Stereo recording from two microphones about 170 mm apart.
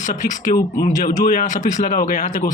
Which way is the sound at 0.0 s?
45° left (ahead or behind).